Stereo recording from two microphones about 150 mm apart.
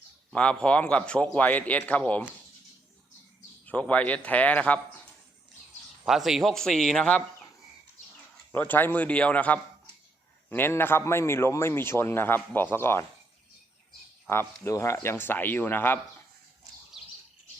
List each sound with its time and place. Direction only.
0.3 s speech: 5° left (ahead or behind)
3.7 s speech: 10° left (ahead or behind)
6.1 s speech: centre (ahead or behind)
8.5 s speech: 10° left (ahead or behind)
14.3 s speech: 15° left (ahead or behind)